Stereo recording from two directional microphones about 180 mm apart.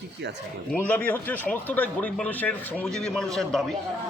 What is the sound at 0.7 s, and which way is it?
A man's voice, 10° left (ahead or behind).